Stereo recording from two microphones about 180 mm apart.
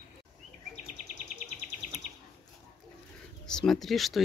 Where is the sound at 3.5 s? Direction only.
Centre (ahead or behind).